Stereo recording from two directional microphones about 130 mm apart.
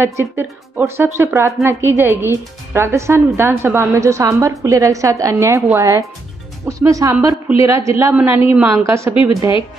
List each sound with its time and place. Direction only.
0.2 s a woman's voice: 15° right (ahead or behind)